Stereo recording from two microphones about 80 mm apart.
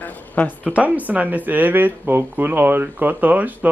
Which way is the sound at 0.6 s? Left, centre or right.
Centre.